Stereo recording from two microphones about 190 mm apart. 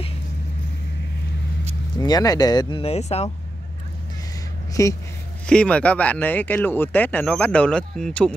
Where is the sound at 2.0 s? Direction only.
20° left (ahead or behind).